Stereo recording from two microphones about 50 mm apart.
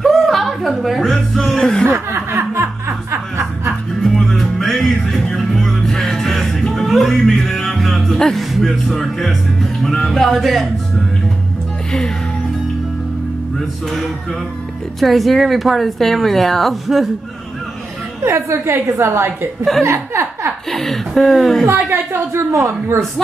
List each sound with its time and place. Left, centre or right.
0.0 s chuckle: centre
1.6 s chuckle: centre
1.9 s snicker: right
4.0 s music: centre
8.5 s speech: centre
9.8 s music: centre
15.0 s a woman's voice: centre
18.2 s a woman's voice: right
20.7 s a woman's voice: centre
21.9 s a woman's voice: right